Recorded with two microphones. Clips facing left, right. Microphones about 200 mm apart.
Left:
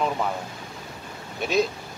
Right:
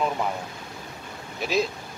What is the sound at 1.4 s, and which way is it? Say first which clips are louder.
Speech: left 2 dB; centre (ahead or behind).